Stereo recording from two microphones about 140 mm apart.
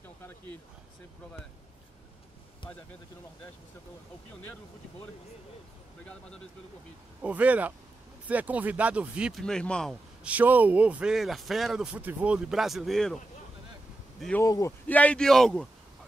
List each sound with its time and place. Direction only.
7.2 s speech: 10° right (ahead or behind)
9.4 s a man's voice: 5° left (ahead or behind)
10.2 s a man's voice: 10° right (ahead or behind)
14.4 s a man's voice: 20° left (ahead or behind)
15.0 s a man's voice: 5° left (ahead or behind)